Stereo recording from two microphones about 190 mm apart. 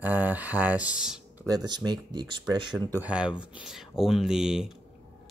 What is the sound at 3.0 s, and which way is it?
Speech, 5° right (ahead or behind).